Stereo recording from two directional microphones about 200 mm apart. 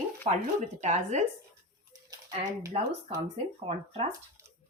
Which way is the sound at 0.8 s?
35° right (ahead or behind).